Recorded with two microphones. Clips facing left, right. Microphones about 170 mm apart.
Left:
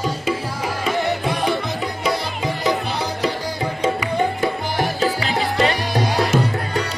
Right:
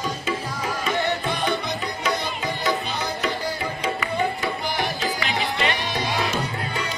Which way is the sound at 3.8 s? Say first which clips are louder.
Left 5 dB; 20° left (ahead or behind).